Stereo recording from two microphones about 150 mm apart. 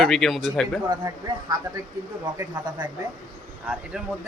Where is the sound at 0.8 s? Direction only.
30° right (ahead or behind).